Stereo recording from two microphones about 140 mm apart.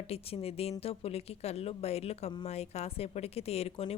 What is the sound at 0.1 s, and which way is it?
A woman's voice, 45° left (ahead or behind).